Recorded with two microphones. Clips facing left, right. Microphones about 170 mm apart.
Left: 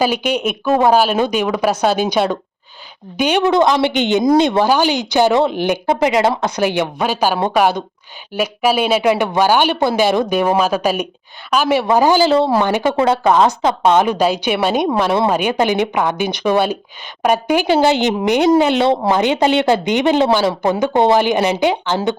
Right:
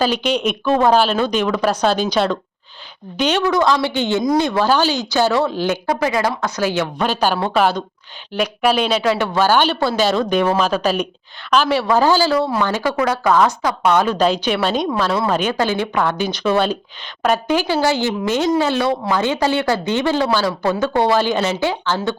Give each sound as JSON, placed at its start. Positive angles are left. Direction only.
{"t": 0.0, "sound": "a woman's voice", "side_deg": 10}
{"t": 3.4, "sound": "a woman's voice", "side_deg": 20}